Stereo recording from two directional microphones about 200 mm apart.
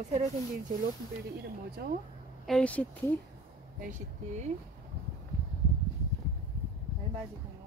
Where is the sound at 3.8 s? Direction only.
40° right (ahead or behind).